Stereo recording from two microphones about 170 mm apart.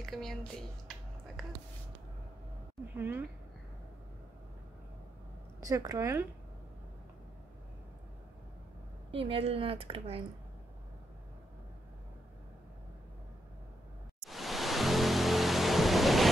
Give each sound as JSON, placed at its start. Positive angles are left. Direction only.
{"t": 0.0, "sound": "speech", "side_deg": 0}
{"t": 0.8, "sound": "finger snapping", "side_deg": 0}
{"t": 3.0, "sound": "speech", "side_deg": -10}
{"t": 5.6, "sound": "speech", "side_deg": -20}
{"t": 9.1, "sound": "speech", "side_deg": -35}
{"t": 14.2, "sound": "pink noise", "side_deg": 0}